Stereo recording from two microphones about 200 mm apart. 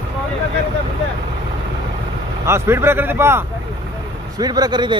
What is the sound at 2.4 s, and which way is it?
A man's voice, 10° right (ahead or behind).